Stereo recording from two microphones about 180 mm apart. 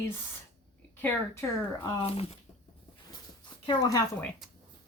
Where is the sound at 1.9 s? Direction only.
30° left (ahead or behind).